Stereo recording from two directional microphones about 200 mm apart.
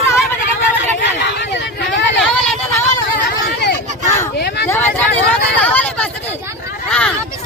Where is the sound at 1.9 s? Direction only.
65° left (ahead or behind).